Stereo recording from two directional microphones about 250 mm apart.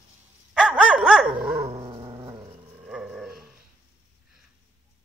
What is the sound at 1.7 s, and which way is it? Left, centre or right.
Dog, centre.